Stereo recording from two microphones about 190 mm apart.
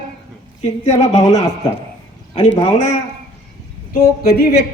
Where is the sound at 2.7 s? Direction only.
40° left (ahead or behind).